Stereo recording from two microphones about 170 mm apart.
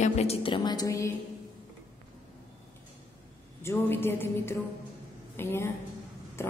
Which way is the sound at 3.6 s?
15° left (ahead or behind).